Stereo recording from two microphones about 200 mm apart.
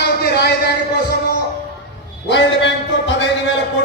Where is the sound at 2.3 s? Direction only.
65° left (ahead or behind).